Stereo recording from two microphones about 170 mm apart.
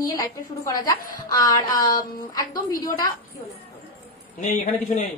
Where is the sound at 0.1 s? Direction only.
20° left (ahead or behind).